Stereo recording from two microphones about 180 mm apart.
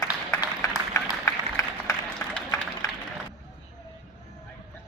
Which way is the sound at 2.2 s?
5° left (ahead or behind).